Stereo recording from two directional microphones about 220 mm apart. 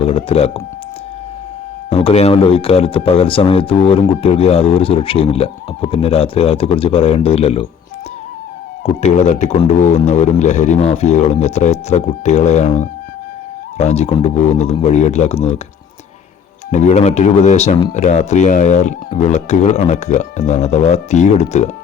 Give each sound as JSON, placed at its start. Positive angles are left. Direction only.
{"t": 0.0, "sound": "speech", "side_deg": 25}
{"t": 1.9, "sound": "speech", "side_deg": 25}
{"t": 9.0, "sound": "speech", "side_deg": 30}
{"t": 16.7, "sound": "speech", "side_deg": 30}